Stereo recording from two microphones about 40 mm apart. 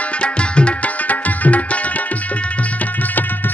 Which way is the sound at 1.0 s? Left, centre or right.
Left.